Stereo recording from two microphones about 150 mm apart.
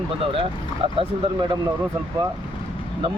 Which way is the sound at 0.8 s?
40° right (ahead or behind).